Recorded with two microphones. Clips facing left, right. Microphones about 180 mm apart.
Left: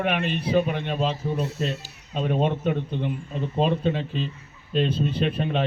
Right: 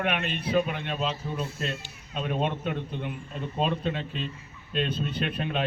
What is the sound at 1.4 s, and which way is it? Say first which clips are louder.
Speech: left 5 dB; 75° left (ahead or behind).